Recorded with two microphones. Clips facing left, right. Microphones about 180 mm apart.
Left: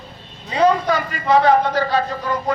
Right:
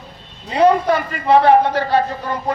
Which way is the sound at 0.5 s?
30° right (ahead or behind).